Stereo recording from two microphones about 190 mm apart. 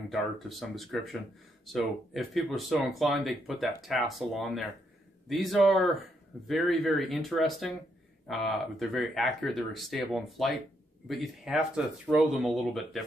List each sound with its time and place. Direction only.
0.1 s speech: centre (ahead or behind)